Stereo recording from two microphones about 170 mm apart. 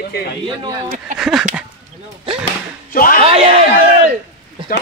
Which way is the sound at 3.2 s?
35° right (ahead or behind).